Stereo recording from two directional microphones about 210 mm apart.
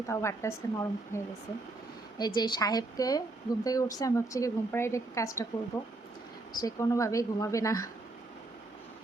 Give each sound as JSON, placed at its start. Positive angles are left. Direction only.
{"t": 0.1, "sound": "a woman's voice", "side_deg": 15}
{"t": 6.6, "sound": "a woman's voice", "side_deg": 15}